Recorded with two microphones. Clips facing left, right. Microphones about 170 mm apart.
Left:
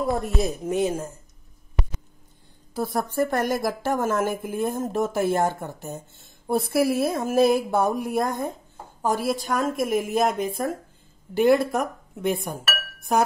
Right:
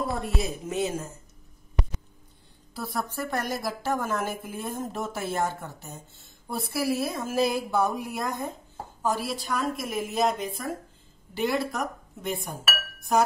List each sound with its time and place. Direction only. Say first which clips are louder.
0.2 s speech: left 5 dB; 45° left (ahead or behind)
2.7 s speech: left 6 dB; 50° left (ahead or behind)